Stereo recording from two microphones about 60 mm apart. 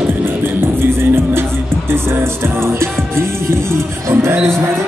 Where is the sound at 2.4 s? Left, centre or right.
Right.